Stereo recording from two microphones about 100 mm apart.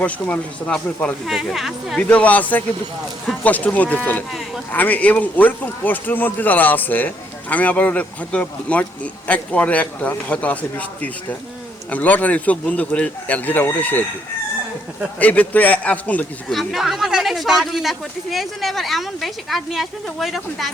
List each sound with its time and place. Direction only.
0.0 s speech: 10° left (ahead or behind)
1.3 s speech: 5° right (ahead or behind)
2.0 s speech: 15° left (ahead or behind)
4.3 s speech: centre (ahead or behind)
4.7 s speech: 15° left (ahead or behind)
15.2 s speech: 15° left (ahead or behind)
16.5 s speech: centre (ahead or behind)